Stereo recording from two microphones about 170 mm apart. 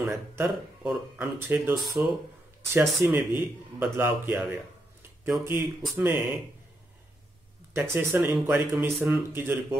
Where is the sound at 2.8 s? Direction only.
10° right (ahead or behind).